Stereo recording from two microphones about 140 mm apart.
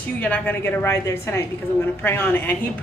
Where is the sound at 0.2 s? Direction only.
15° left (ahead or behind).